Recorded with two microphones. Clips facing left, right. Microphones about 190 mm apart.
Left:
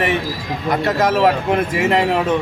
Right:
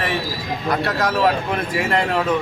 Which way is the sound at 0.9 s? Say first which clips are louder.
Left 5 dB; 25° left (ahead or behind).